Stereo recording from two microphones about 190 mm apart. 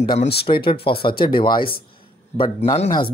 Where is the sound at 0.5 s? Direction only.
25° left (ahead or behind).